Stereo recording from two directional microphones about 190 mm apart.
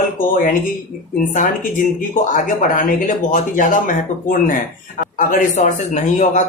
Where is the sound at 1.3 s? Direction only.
40° left (ahead or behind).